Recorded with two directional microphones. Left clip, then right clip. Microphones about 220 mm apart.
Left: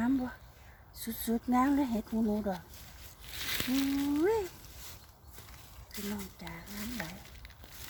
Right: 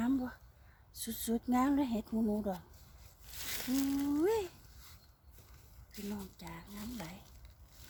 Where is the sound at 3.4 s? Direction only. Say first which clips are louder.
Left 4 dB; 30° right (ahead or behind).